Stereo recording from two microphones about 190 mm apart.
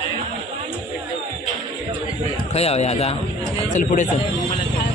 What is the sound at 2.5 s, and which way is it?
Speech, 35° left (ahead or behind).